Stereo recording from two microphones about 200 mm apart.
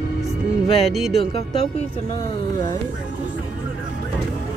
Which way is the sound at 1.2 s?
30° left (ahead or behind).